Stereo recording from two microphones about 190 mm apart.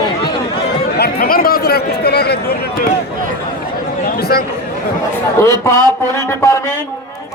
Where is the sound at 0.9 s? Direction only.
55° left (ahead or behind).